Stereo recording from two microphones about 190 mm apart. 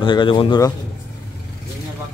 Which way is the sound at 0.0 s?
25° left (ahead or behind).